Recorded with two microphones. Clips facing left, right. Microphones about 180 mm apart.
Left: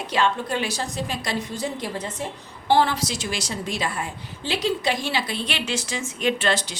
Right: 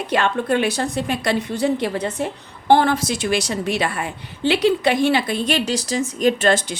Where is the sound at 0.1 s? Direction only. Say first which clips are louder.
Right 4 dB; 60° right (ahead or behind).